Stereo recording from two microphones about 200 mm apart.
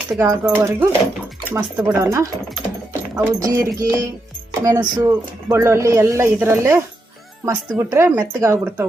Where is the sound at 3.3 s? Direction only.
15° right (ahead or behind).